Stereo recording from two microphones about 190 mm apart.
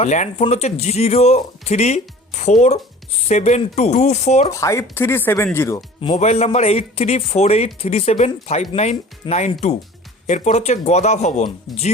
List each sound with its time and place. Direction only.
0.0 s speech: 35° left (ahead or behind)
4.5 s speech: 15° left (ahead or behind)
6.0 s speech: 35° left (ahead or behind)